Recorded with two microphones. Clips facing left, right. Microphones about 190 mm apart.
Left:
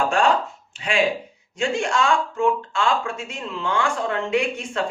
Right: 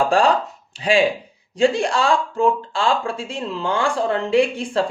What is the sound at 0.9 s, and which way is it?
Speech, 35° right (ahead or behind).